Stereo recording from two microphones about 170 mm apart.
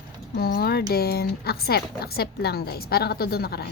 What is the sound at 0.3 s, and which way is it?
Speech, 65° left (ahead or behind).